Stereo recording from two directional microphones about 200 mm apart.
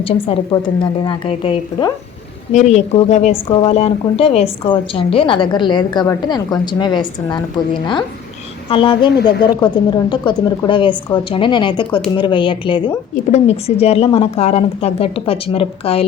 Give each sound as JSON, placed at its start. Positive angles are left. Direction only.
{"t": 0.0, "sound": "a woman's voice", "side_deg": 25}